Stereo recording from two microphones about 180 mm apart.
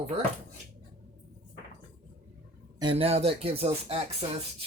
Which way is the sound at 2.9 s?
35° right (ahead or behind).